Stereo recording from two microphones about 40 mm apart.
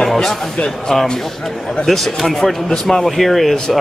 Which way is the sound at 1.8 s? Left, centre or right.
Centre.